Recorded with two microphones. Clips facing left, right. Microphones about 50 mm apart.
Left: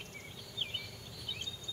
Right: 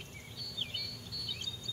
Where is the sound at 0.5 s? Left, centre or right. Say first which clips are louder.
Left 1 dB; centre.